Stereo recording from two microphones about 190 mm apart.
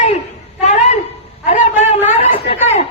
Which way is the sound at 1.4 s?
35° left (ahead or behind).